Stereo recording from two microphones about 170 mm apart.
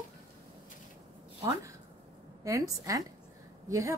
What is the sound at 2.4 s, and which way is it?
Speech, 20° right (ahead or behind).